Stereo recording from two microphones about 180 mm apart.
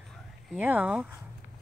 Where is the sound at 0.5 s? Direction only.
10° right (ahead or behind).